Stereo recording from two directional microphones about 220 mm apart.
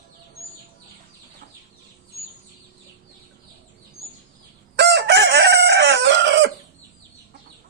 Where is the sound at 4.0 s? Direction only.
70° left (ahead or behind).